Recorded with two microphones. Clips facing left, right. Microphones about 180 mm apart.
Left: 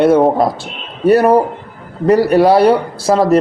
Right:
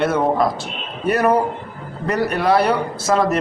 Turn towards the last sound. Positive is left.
turn(degrees=35)  # may be behind; listen again after turning